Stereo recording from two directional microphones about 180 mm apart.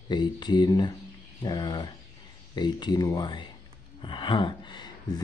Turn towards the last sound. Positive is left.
turn(degrees=25)  # may be behind; listen again after turning